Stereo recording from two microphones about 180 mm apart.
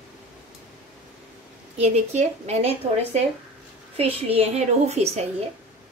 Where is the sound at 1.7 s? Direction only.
35° right (ahead or behind).